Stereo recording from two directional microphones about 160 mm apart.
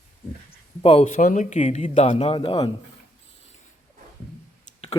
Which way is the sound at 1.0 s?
55° left (ahead or behind).